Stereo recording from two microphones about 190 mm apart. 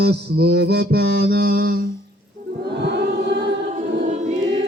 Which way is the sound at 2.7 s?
60° right (ahead or behind).